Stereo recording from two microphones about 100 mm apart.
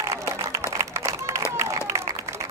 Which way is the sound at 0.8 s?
30° right (ahead or behind).